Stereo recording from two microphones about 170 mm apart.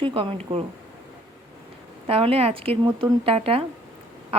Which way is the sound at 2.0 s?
35° right (ahead or behind).